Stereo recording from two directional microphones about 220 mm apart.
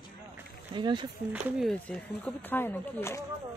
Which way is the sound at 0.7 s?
20° right (ahead or behind).